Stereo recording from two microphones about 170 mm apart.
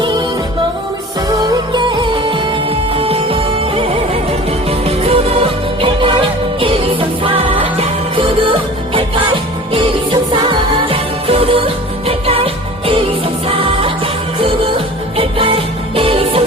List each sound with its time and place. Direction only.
1.4 s music: 25° right (ahead or behind)
15.2 s music: 30° right (ahead or behind)